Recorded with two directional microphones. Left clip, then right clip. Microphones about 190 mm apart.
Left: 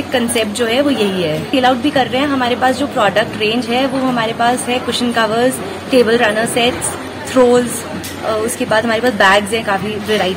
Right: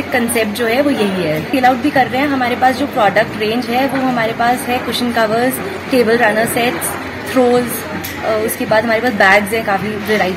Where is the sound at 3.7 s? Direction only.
Centre (ahead or behind).